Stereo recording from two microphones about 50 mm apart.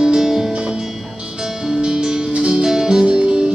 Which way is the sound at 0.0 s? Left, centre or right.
Centre.